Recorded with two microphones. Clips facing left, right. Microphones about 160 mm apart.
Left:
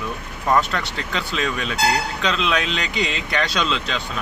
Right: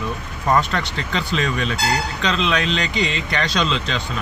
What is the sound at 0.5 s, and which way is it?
Speech, 5° left (ahead or behind).